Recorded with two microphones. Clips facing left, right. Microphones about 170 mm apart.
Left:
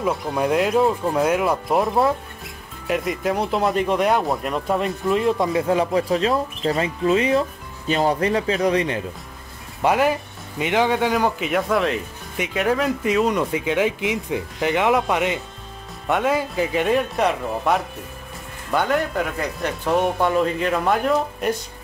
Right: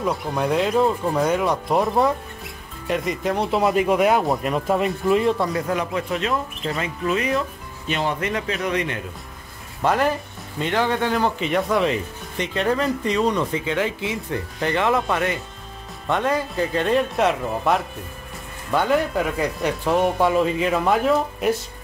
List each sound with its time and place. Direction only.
0.0 s speech: centre (ahead or behind)
5.7 s speech: 30° left (ahead or behind)
9.8 s speech: 10° left (ahead or behind)